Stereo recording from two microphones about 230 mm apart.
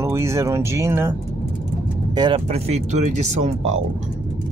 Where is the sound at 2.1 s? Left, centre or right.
Right.